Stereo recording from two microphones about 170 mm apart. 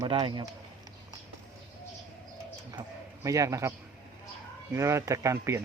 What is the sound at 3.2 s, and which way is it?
Speech, 20° right (ahead or behind).